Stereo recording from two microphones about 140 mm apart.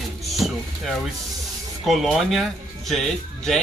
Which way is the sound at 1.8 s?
Centre (ahead or behind).